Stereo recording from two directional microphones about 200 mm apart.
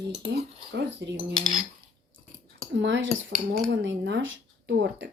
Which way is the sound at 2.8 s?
65° right (ahead or behind).